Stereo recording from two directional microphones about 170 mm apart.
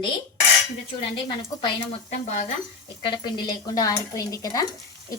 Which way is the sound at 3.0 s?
25° left (ahead or behind).